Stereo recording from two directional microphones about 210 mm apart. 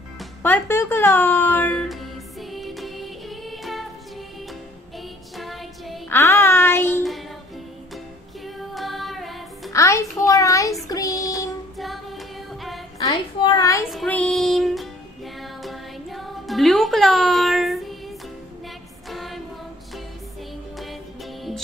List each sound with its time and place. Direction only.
0.4 s speech: 10° left (ahead or behind)
2.5 s music: centre (ahead or behind)
5.4 s music: centre (ahead or behind)
6.1 s a sound: 10° left (ahead or behind)
8.7 s music: centre (ahead or behind)
9.7 s child singing: 15° left (ahead or behind)
11.8 s female singing: centre (ahead or behind)
13.0 s a woman's voice: 20° left (ahead or behind)
13.8 s music: 5° left (ahead or behind)
19.0 s music: centre (ahead or behind)